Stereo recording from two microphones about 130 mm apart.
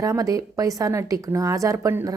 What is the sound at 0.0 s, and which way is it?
A woman's voice, 25° right (ahead or behind).